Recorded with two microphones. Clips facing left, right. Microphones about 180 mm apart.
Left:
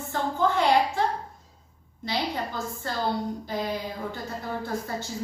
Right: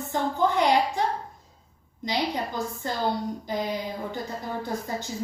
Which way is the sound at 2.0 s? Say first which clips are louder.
Right 2 dB; 15° right (ahead or behind).